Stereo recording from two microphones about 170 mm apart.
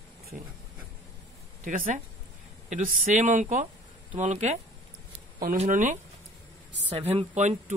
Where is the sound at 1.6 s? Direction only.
50° right (ahead or behind).